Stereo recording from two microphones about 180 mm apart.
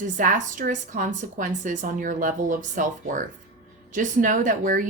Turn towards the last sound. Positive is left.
turn(degrees=-45)  # may be behind; listen again after turning